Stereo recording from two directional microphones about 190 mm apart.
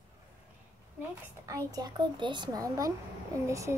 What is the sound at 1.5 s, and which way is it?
A child's voice, 20° right (ahead or behind).